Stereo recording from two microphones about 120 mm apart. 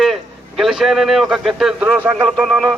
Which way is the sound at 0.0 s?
Centre (ahead or behind).